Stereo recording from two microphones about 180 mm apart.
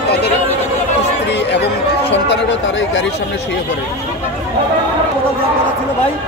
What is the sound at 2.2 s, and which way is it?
Speech, 80° left.